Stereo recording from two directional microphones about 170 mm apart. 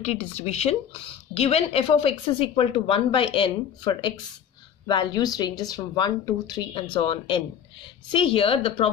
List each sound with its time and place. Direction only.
0.0 s speech: 40° left (ahead or behind)